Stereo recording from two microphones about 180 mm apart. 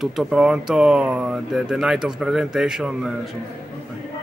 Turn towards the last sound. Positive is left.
turn(degrees=-5)  # may be behind; listen again after turning